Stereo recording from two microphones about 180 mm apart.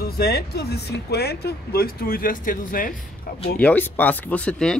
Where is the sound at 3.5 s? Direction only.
10° left (ahead or behind).